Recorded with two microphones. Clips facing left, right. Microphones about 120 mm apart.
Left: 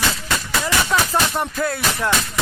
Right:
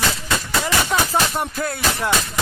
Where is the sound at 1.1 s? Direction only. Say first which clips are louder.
Even; centre (ahead or behind).